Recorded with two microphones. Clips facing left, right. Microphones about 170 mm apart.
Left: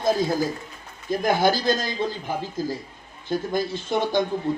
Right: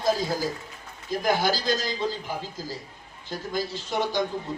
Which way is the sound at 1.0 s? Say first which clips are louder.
Left 4 dB; 55° left (ahead or behind).